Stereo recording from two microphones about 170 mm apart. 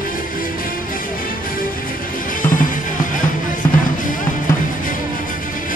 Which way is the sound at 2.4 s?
50° left (ahead or behind).